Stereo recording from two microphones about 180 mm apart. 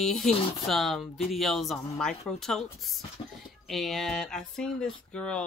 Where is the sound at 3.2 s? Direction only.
30° left (ahead or behind).